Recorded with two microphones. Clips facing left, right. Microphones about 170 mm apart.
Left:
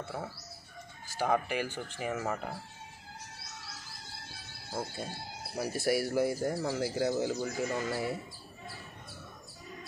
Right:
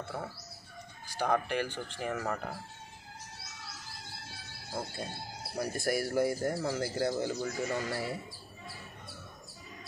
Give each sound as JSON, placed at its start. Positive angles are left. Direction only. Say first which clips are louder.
{"t": 0.1, "sound": "speech", "louder": "even", "side_deg": 5}
{"t": 4.7, "sound": "speech", "louder": "left 1 dB", "side_deg": 5}